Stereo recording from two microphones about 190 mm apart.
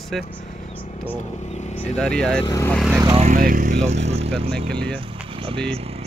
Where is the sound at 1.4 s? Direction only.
35° left (ahead or behind).